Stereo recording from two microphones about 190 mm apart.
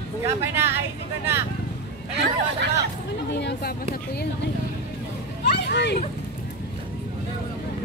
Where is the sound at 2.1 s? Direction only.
65° right (ahead or behind).